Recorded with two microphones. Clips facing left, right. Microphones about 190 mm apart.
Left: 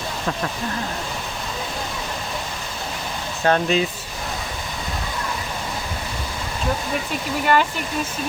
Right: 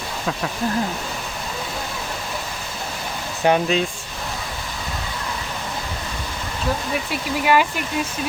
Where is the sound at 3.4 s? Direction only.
15° right (ahead or behind).